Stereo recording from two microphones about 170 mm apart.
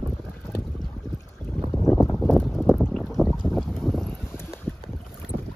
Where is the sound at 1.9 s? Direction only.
15° left (ahead or behind).